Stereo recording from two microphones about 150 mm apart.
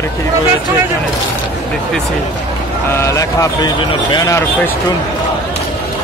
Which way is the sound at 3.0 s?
20° left (ahead or behind).